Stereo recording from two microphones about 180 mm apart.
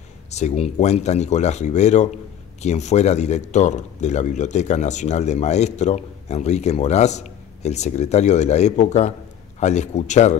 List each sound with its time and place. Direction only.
0.3 s speech: 40° left (ahead or behind)